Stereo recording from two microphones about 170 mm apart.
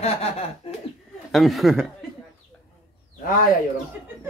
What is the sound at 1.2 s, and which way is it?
Speech, centre (ahead or behind).